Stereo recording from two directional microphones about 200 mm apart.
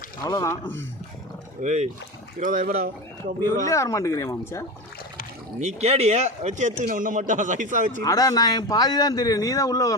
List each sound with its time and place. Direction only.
0.2 s speech: 15° left (ahead or behind)
1.6 s a man's voice: 35° right (ahead or behind)
3.4 s speech: 15° left (ahead or behind)
5.5 s a man's voice: 35° right (ahead or behind)
8.0 s speech: 20° left (ahead or behind)